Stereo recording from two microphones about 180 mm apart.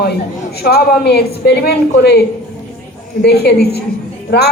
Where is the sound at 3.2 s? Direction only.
65° left (ahead or behind).